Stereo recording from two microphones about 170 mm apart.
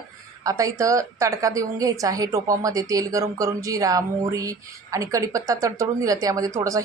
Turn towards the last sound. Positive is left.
turn(degrees=-20)  # may be behind; listen again after turning